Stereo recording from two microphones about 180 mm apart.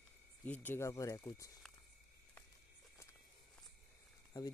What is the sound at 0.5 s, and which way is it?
Speech, 10° left (ahead or behind).